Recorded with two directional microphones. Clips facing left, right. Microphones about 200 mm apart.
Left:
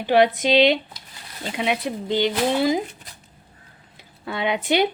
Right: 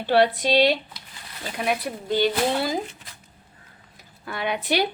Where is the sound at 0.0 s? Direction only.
15° left (ahead or behind).